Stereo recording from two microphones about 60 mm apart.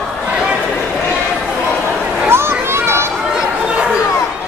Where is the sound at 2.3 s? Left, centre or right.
Right.